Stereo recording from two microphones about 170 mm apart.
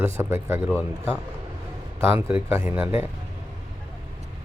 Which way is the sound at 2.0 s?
15° right (ahead or behind).